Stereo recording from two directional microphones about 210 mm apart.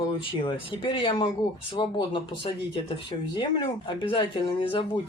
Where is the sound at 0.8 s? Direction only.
25° left (ahead or behind).